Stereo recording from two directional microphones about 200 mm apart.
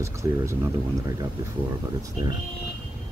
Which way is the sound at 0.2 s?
20° right (ahead or behind).